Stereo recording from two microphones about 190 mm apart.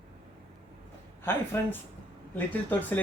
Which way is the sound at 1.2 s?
10° left (ahead or behind).